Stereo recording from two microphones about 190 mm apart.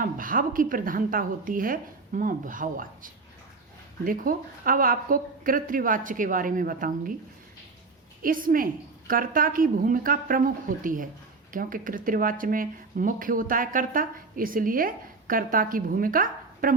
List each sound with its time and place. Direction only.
0.0 s speech: 45° right (ahead or behind)
8.2 s speech: 45° right (ahead or behind)